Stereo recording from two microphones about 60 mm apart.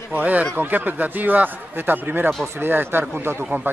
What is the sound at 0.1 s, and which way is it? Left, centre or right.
Speech, right.